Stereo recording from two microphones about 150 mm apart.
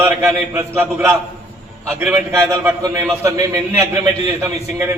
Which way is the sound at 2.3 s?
20° right (ahead or behind).